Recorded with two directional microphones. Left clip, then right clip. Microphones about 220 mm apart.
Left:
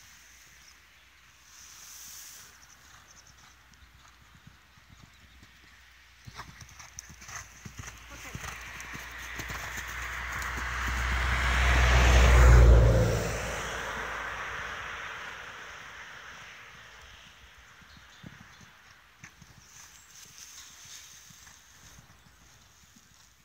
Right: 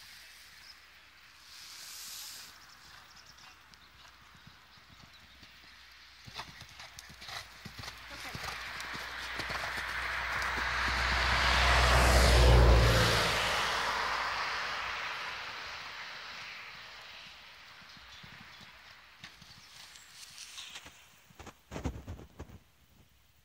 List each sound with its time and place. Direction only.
8.3 s horse: centre (ahead or behind)
8.5 s clip-clop: 45° left (ahead or behind); by 12.5 s 25° left (ahead or behind)
12.8 s vehicle: 25° right (ahead or behind)
13.3 s a sound: 35° right (ahead or behind)